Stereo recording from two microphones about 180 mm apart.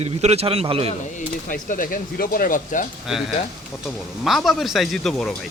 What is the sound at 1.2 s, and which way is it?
Speech, 50° left (ahead or behind).